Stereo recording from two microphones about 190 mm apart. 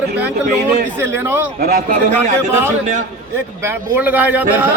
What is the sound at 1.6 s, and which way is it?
Speech, 50° right (ahead or behind).